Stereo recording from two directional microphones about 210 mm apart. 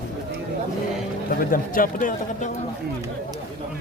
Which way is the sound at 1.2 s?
40° left (ahead or behind).